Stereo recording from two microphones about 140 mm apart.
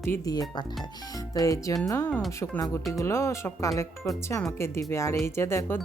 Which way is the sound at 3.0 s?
20° left (ahead or behind).